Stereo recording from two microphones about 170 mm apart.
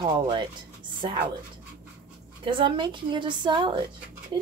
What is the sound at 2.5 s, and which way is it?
Speech, 30° right (ahead or behind).